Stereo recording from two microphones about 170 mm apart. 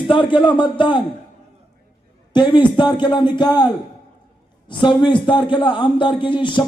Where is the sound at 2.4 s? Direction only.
25° left (ahead or behind).